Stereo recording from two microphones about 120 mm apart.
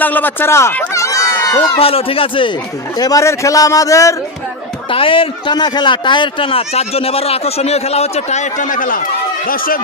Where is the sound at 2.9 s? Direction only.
30° left (ahead or behind).